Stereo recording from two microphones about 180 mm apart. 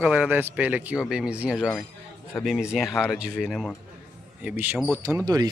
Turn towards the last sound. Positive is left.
turn(degrees=-20)  # may be behind; listen again after turning